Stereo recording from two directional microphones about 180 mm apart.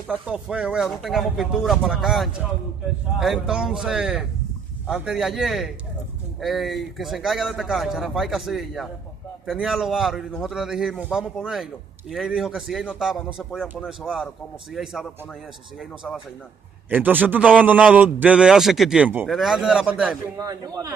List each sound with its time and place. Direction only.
0.1 s a man's voice: 5° right (ahead or behind)
20.3 s a man's voice: 20° right (ahead or behind)